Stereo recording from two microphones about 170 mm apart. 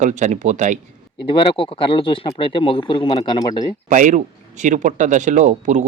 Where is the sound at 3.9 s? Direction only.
50° right (ahead or behind).